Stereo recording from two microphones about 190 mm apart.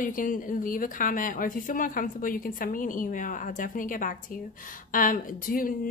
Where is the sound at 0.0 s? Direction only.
45° left (ahead or behind).